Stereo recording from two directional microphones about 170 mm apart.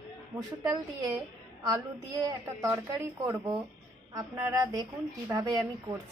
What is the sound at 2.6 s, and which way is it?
A woman's voice, 20° right (ahead or behind).